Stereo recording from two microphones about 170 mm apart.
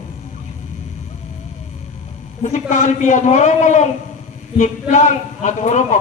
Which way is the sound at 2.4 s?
45° left (ahead or behind).